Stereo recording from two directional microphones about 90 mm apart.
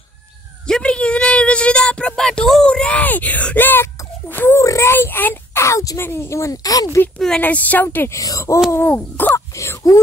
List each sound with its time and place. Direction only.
0.7 s a sound: 10° left (ahead or behind)
4.6 s whimper: 30° left (ahead or behind)
6.0 s speech: 30° left (ahead or behind)
7.2 s speech: 10° left (ahead or behind)
8.2 s speech: 35° left (ahead or behind)
8.7 s speech: 20° left (ahead or behind)